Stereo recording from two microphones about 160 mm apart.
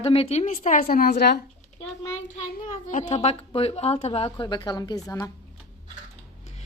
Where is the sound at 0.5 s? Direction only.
50° left (ahead or behind).